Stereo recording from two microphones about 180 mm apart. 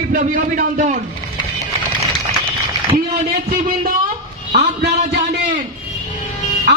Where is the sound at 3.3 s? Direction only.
55° right (ahead or behind).